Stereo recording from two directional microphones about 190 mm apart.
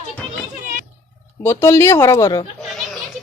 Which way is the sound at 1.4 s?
15° left (ahead or behind).